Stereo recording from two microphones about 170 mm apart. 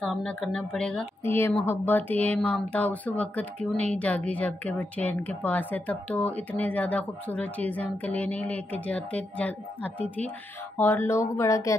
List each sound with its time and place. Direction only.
0.0 s a woman's voice: 5° left (ahead or behind)